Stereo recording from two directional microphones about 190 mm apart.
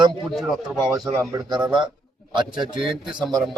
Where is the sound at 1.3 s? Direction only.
20° right (ahead or behind).